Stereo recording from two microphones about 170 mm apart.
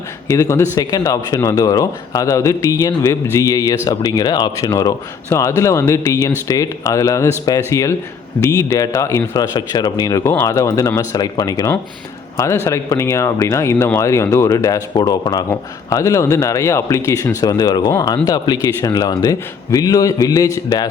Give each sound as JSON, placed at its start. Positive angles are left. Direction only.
{"t": 0.3, "sound": "speech", "side_deg": 15}